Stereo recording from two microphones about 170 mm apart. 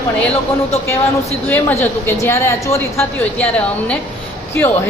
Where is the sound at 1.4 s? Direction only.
10° left (ahead or behind).